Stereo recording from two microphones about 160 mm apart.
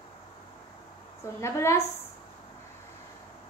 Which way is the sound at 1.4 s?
15° left (ahead or behind).